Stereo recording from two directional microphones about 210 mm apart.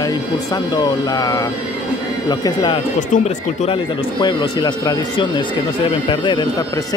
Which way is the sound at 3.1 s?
30° left (ahead or behind).